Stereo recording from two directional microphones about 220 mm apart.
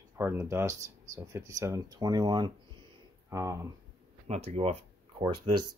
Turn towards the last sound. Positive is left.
turn(degrees=-25)  # may be behind; listen again after turning